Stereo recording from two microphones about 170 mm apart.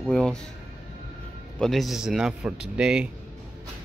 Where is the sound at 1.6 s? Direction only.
Centre (ahead or behind).